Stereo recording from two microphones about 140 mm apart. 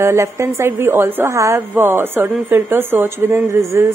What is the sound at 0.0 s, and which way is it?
A woman's voice, 20° right (ahead or behind).